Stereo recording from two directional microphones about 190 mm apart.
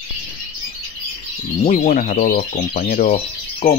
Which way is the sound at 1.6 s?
40° left (ahead or behind).